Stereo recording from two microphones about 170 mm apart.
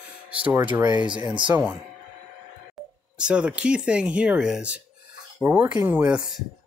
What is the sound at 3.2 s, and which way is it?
Speech, 5° right (ahead or behind).